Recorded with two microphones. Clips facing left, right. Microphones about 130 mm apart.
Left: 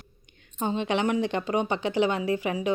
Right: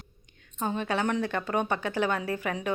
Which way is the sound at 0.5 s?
20° left (ahead or behind).